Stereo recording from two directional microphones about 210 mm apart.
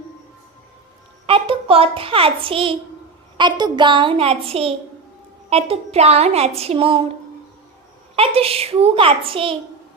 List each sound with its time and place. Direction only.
1.3 s a child's voice: 25° right (ahead or behind)
3.3 s child singing: 20° right (ahead or behind)
8.1 s child singing: 30° right (ahead or behind)